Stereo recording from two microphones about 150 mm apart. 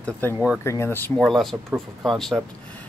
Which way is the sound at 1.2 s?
Centre (ahead or behind).